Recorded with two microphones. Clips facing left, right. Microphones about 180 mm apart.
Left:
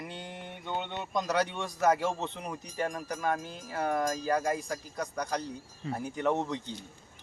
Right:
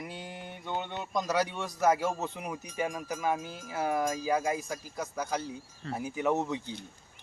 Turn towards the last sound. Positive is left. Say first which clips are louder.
# right 1 dB
turn(degrees=-5)  # may be behind; listen again after turning